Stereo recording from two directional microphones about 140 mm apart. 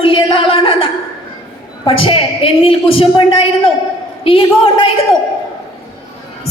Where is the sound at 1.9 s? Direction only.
40° left (ahead or behind).